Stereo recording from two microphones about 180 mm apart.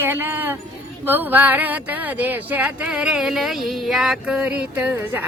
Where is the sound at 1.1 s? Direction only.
10° right (ahead or behind).